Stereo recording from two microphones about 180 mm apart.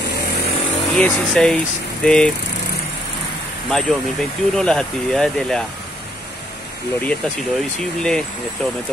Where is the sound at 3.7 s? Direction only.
5° left (ahead or behind).